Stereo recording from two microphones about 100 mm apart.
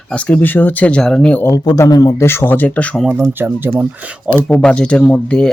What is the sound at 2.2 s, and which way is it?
Speech, 25° left (ahead or behind).